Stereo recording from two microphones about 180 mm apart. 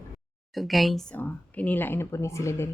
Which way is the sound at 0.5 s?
Centre (ahead or behind).